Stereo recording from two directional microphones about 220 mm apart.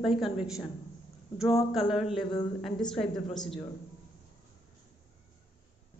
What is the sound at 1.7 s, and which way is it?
A woman's voice, centre (ahead or behind).